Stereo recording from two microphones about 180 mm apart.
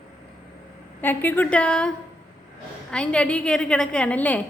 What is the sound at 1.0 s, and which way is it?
Speech, 10° left (ahead or behind).